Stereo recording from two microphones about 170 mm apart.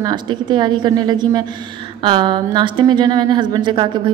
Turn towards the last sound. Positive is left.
turn(degrees=-25)  # may be behind; listen again after turning